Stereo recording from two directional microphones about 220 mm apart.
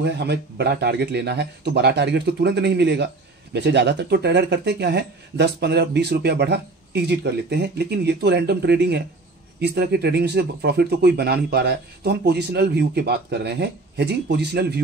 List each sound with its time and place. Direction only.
0.0 s speech: 50° right (ahead or behind)